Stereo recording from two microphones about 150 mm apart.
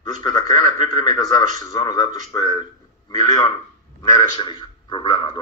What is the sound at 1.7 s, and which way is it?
A man's voice, 25° left (ahead or behind).